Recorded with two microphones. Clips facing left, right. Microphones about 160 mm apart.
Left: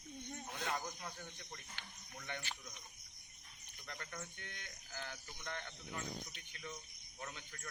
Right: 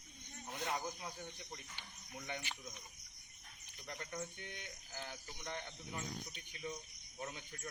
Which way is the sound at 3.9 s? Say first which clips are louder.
Right 4 dB; 20° right (ahead or behind).